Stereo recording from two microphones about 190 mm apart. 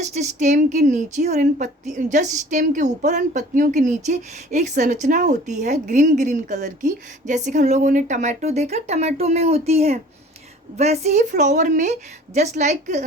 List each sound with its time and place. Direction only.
0.0 s speech: 35° right (ahead or behind)